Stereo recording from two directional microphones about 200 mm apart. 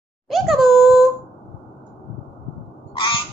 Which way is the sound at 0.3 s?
Centre (ahead or behind).